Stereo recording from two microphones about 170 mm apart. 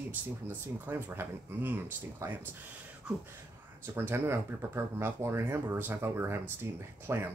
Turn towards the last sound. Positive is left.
turn(degrees=-15)  # may be behind; listen again after turning